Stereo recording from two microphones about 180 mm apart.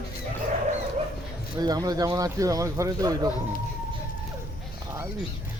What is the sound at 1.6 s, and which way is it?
Speech, 20° right (ahead or behind).